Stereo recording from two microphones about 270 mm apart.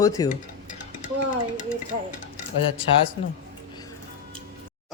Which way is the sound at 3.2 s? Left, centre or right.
Centre.